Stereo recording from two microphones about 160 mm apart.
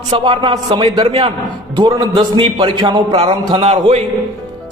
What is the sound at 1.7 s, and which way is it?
A man's voice, 25° right (ahead or behind).